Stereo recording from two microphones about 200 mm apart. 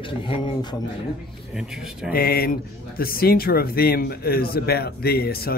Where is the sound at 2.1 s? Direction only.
50° left (ahead or behind).